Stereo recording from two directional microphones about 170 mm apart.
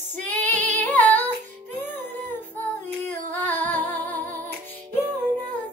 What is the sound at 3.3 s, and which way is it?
Humming, 10° left (ahead or behind).